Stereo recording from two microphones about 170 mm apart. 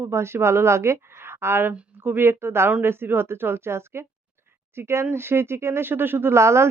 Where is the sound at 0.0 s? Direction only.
15° right (ahead or behind).